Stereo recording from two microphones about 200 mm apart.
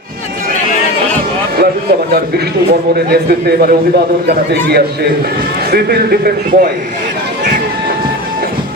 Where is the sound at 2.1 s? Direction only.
55° right (ahead or behind).